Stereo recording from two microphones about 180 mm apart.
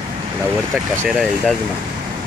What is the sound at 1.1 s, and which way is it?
Speech, centre (ahead or behind).